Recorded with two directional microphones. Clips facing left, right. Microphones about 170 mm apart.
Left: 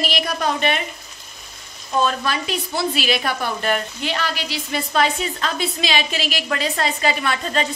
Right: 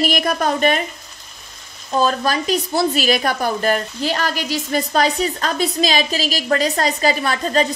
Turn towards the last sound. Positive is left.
turn(degrees=-40)  # may be behind; listen again after turning